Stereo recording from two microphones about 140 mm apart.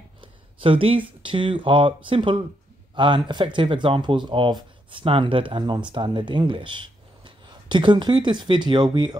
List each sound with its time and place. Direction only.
0.2 s speech: 40° right (ahead or behind)